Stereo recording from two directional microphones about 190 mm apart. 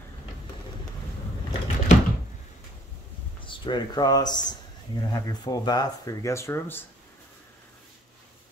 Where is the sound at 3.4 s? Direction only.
25° left (ahead or behind).